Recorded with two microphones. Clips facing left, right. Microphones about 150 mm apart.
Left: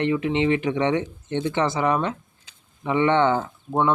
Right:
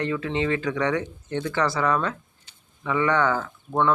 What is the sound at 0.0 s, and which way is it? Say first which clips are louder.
Speech: left 4 dB; 20° left (ahead or behind).